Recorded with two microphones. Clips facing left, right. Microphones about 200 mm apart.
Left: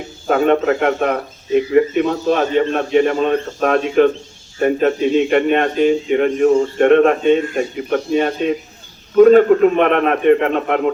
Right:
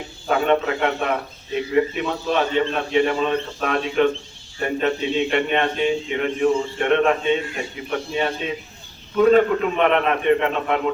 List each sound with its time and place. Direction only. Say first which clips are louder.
0.3 s a man's voice: left 5 dB; 45° left (ahead or behind)